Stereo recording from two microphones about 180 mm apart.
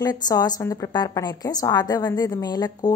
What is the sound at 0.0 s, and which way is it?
A woman's voice, 20° left (ahead or behind).